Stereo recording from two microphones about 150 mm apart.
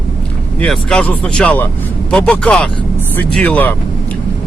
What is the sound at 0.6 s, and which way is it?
Speech, 5° left (ahead or behind).